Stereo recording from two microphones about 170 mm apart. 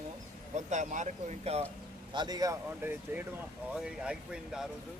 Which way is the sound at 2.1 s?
25° right (ahead or behind).